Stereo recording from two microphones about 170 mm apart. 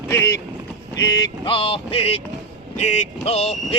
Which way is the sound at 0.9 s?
20° left (ahead or behind).